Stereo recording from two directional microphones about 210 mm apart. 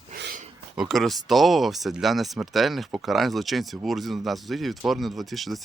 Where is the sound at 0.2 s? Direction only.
45° right (ahead or behind).